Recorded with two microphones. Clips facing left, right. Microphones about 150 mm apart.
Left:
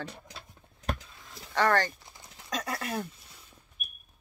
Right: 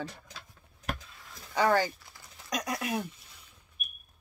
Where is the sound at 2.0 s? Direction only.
20° left (ahead or behind).